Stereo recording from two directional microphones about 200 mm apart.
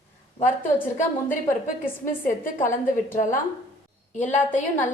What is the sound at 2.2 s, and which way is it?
A woman's voice, 40° left (ahead or behind).